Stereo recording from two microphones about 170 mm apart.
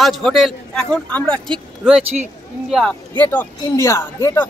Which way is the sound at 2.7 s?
5° left (ahead or behind).